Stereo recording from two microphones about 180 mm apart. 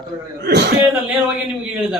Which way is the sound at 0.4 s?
65° right (ahead or behind).